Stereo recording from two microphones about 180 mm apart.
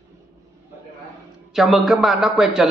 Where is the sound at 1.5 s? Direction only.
Centre (ahead or behind).